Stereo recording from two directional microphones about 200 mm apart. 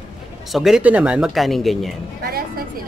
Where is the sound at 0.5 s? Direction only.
Centre (ahead or behind).